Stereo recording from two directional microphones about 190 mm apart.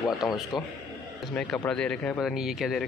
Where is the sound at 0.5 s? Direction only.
20° left (ahead or behind).